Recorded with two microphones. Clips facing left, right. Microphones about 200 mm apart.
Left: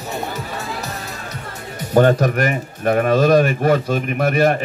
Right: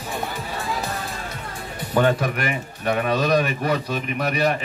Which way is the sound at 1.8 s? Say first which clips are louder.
Left 6 dB; 45° left (ahead or behind).